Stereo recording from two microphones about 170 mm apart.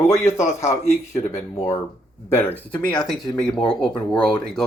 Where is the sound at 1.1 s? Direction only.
15° left (ahead or behind).